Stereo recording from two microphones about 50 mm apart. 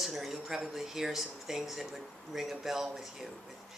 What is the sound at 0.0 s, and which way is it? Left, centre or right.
Speech, centre.